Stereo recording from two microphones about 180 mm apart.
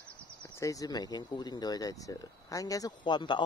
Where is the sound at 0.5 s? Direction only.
20° left (ahead or behind).